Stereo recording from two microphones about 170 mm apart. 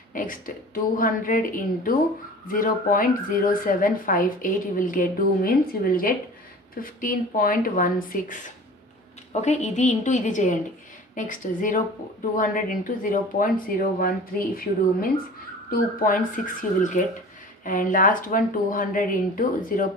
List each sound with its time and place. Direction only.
0.1 s a woman's voice: 55° left (ahead or behind)